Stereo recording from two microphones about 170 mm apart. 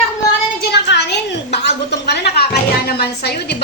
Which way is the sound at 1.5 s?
75° left (ahead or behind).